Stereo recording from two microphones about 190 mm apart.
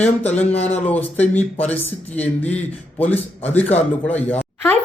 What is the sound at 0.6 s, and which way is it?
Speech, 35° left (ahead or behind).